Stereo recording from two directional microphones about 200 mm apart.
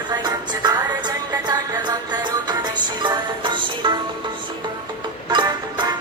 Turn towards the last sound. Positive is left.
turn(degrees=-20)  # may be behind; listen again after turning